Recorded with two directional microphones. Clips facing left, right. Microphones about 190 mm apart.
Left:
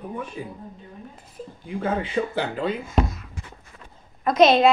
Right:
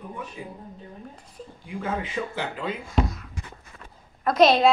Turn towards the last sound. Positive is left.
turn(degrees=0)  # may be behind; listen again after turning